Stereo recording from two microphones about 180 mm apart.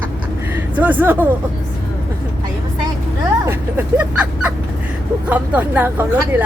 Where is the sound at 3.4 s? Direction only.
10° right (ahead or behind).